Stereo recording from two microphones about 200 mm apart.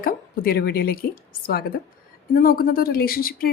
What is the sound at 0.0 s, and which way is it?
A woman's voice, 45° left (ahead or behind).